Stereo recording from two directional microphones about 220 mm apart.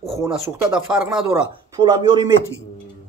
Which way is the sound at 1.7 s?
20° right (ahead or behind).